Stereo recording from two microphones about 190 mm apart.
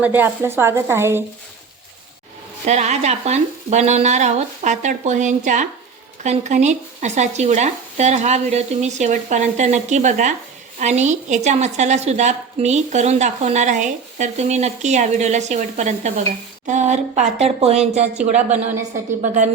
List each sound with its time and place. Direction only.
0.0 s speech: 10° right (ahead or behind)
2.6 s speech: 35° right (ahead or behind)